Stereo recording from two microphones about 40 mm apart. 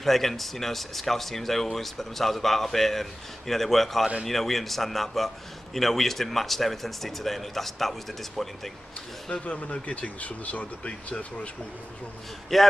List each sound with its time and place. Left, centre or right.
0.0 s a man's voice: centre
9.5 s speech: left
12.5 s speech: centre